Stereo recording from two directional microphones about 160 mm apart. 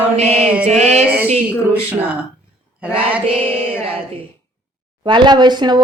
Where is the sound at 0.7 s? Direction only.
45° right (ahead or behind).